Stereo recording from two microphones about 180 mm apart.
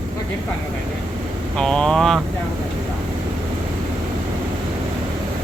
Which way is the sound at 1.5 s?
5° left (ahead or behind).